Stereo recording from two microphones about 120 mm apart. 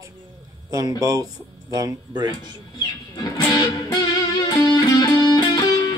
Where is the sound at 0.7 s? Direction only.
30° right (ahead or behind).